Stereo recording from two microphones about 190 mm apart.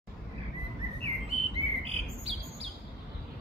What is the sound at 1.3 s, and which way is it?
Bird, 30° right (ahead or behind).